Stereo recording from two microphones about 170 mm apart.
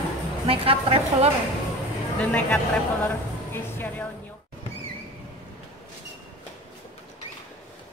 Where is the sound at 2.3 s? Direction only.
5° left (ahead or behind).